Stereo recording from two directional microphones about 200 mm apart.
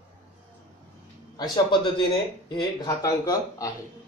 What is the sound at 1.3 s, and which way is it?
Speech, 20° left (ahead or behind).